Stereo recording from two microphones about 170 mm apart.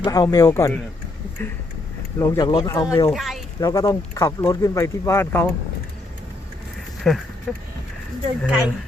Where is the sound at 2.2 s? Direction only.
20° left (ahead or behind).